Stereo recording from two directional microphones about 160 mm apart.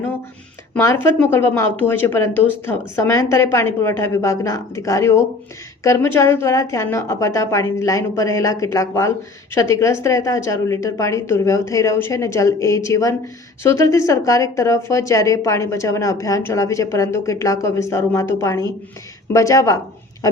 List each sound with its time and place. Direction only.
0.7 s a woman's voice: 15° left (ahead or behind)